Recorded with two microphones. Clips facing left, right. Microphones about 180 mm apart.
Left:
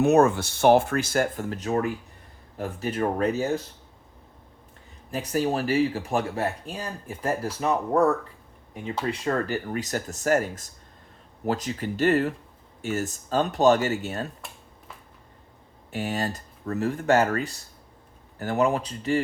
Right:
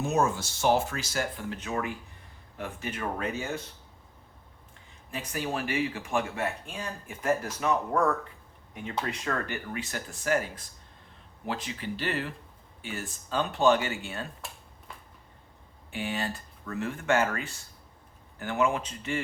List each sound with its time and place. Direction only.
0.0 s speech: 65° left (ahead or behind); by 3.6 s 40° left (ahead or behind)
5.1 s speech: 40° left (ahead or behind)
15.9 s speech: 40° left (ahead or behind)